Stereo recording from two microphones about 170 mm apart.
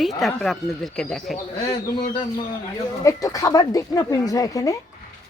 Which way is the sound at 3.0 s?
20° left (ahead or behind).